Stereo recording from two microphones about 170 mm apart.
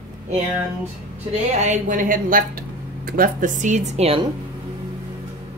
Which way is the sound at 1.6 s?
50° right (ahead or behind).